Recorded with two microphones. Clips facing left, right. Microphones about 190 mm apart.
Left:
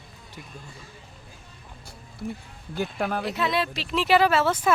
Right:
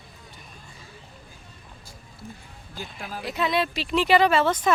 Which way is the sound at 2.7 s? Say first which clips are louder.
Left 10 dB; 65° left (ahead or behind).